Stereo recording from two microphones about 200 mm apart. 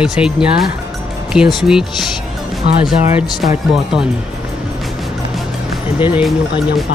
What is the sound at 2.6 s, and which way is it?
Speech, 30° right (ahead or behind).